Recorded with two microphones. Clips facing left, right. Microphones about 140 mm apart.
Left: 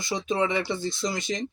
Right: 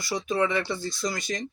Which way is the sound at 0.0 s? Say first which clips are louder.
Even; 20° left (ahead or behind).